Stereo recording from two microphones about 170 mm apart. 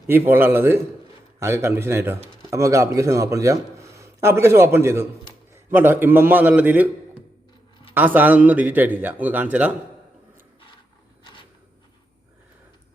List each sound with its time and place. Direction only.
0.1 s a man's voice: 15° right (ahead or behind)